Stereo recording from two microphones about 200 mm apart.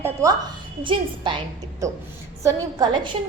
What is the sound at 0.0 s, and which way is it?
A woman's voice, 15° right (ahead or behind).